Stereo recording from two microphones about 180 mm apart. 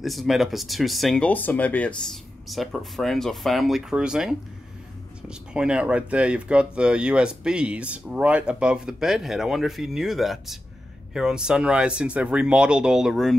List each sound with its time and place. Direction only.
0.0 s speech: centre (ahead or behind)